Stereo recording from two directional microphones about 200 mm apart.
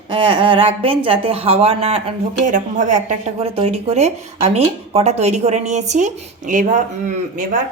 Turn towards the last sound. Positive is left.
turn(degrees=-40)  # may be behind; listen again after turning